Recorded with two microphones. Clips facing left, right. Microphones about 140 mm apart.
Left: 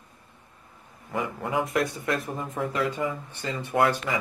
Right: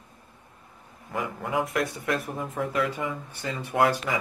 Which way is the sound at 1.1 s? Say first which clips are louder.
Left 1 dB; centre (ahead or behind).